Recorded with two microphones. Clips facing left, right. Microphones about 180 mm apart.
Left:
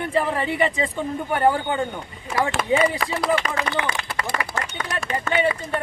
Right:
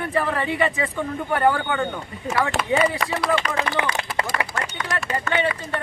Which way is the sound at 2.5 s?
40° right (ahead or behind).